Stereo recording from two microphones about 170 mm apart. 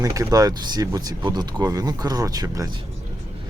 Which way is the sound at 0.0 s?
20° right (ahead or behind).